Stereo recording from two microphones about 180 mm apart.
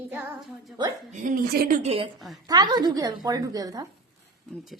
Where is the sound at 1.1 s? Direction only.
45° right (ahead or behind).